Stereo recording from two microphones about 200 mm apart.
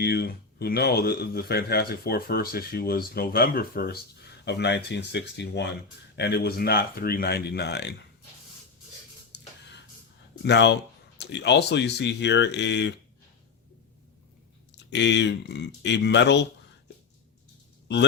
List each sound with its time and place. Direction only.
0.0 s speech: 55° left (ahead or behind)
9.3 s a sound: 55° left (ahead or behind)
10.4 s speech: 60° left (ahead or behind)
14.7 s speech: 60° left (ahead or behind)